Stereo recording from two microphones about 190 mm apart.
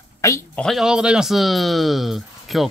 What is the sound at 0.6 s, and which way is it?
Speech, centre (ahead or behind).